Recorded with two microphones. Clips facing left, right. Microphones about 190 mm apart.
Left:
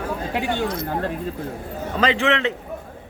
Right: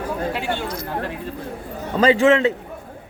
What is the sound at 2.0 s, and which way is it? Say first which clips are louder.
Speech: right 6 dB; 40° right (ahead or behind).